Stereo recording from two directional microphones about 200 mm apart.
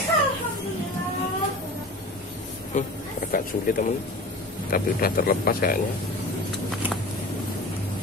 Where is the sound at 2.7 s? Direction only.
40° left (ahead or behind).